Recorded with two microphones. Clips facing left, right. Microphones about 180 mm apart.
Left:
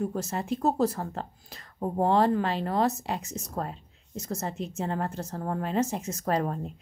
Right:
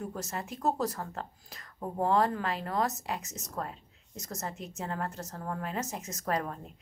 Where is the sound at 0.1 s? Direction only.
30° left (ahead or behind).